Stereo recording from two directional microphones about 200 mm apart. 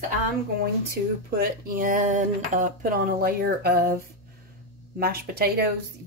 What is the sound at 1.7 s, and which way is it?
Speech, 45° right (ahead or behind).